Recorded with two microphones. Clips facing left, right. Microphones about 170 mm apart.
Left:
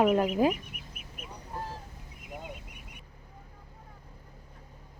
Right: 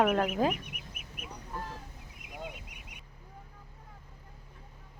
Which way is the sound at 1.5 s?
35° left (ahead or behind).